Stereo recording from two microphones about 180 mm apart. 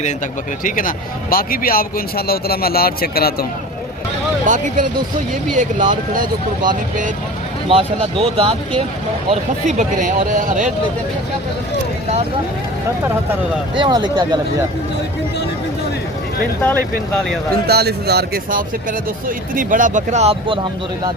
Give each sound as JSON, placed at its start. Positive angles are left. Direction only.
{"t": 0.6, "sound": "speech", "side_deg": 50}
{"t": 4.4, "sound": "speech", "side_deg": -45}
{"t": 7.7, "sound": "speech", "side_deg": -30}
{"t": 9.3, "sound": "speech", "side_deg": -40}
{"t": 13.7, "sound": "speech", "side_deg": -25}
{"t": 17.7, "sound": "speech", "side_deg": -65}
{"t": 19.5, "sound": "speech", "side_deg": -45}